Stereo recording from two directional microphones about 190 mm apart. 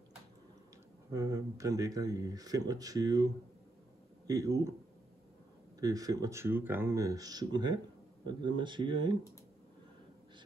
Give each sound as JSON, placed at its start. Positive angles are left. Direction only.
{"t": 1.1, "sound": "speech", "side_deg": -15}
{"t": 4.3, "sound": "speech", "side_deg": -15}
{"t": 5.8, "sound": "speech", "side_deg": -20}